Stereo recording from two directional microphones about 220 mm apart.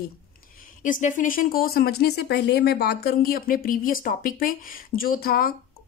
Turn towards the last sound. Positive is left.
turn(degrees=40)  # may be behind; listen again after turning